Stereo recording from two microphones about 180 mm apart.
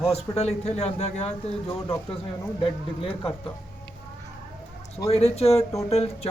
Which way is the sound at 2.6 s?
30° left (ahead or behind).